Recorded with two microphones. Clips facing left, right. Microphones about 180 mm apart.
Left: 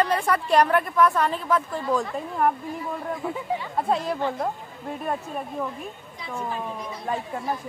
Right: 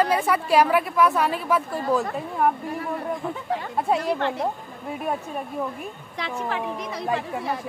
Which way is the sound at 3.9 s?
70° right (ahead or behind).